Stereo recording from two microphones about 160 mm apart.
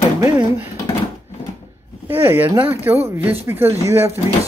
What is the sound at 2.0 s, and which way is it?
Speech, 15° right (ahead or behind).